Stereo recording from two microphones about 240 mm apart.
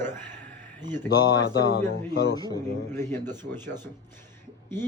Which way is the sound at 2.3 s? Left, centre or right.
Centre.